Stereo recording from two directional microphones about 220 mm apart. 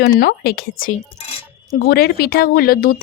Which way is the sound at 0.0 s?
40° left (ahead or behind).